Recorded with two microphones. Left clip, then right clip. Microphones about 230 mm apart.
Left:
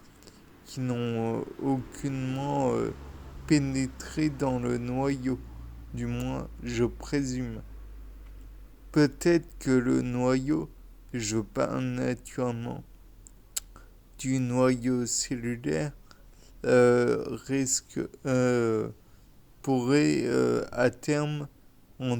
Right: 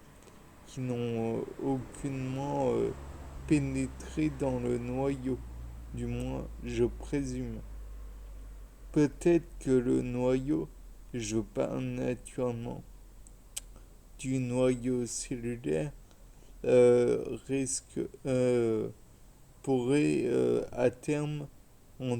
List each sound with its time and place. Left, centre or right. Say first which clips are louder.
0.8 s speech: left 3 dB; left
8.9 s speech: left 3 dB; left
14.2 s speech: left 4 dB; left